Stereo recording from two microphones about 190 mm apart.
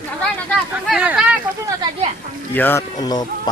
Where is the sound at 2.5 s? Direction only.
10° left (ahead or behind).